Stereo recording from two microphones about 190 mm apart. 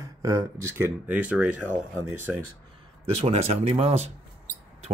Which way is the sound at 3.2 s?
35° right (ahead or behind).